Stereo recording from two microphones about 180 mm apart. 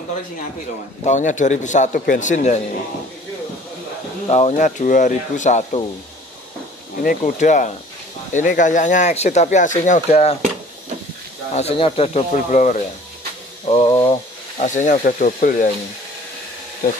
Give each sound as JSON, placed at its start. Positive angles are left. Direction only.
{"t": 1.0, "sound": "speech", "side_deg": 45}
{"t": 4.3, "sound": "speech", "side_deg": 40}
{"t": 7.0, "sound": "speech", "side_deg": 50}
{"t": 11.5, "sound": "speech", "side_deg": 35}
{"t": 13.7, "sound": "a sound", "side_deg": 30}
{"t": 14.6, "sound": "speech", "side_deg": 45}